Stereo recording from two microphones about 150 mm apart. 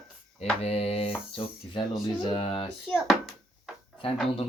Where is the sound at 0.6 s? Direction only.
45° left (ahead or behind).